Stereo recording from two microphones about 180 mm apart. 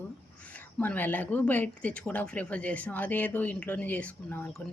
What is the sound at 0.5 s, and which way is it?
Speech, 10° left (ahead or behind).